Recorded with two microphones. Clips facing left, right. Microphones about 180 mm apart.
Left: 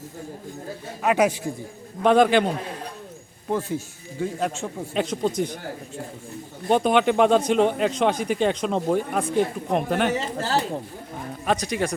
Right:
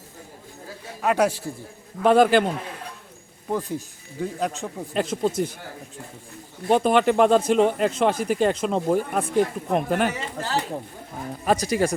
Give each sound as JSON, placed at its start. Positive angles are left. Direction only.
{"t": 1.0, "sound": "a man's voice", "side_deg": 10}
{"t": 2.0, "sound": "speech", "side_deg": 0}
{"t": 3.5, "sound": "speech", "side_deg": 0}
{"t": 6.7, "sound": "speech", "side_deg": 0}
{"t": 10.2, "sound": "speech", "side_deg": 35}
{"t": 11.4, "sound": "speech", "side_deg": -5}